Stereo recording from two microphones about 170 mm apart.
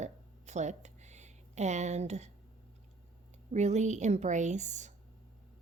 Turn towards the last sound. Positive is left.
turn(degrees=-45)  # may be behind; listen again after turning